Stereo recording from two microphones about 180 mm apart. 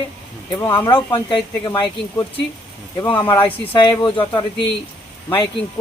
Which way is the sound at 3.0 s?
25° left (ahead or behind).